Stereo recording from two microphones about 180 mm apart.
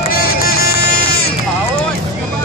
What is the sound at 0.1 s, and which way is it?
Music, 55° left (ahead or behind).